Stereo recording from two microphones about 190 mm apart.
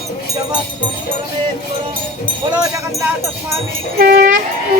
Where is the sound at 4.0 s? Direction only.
50° right (ahead or behind).